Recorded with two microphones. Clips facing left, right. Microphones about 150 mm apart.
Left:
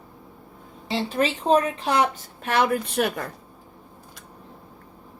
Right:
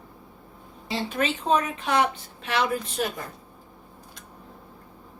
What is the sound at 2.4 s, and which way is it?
Speech, 50° left (ahead or behind).